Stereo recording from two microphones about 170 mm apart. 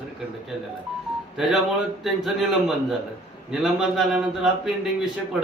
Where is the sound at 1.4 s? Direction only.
Centre (ahead or behind).